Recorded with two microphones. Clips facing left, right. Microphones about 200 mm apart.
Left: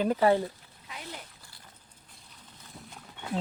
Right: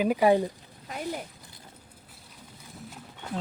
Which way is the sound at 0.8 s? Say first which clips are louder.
Right 9 dB; 50° right (ahead or behind).